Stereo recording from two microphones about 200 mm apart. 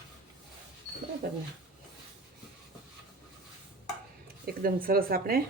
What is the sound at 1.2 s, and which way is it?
Bird, 50° right (ahead or behind).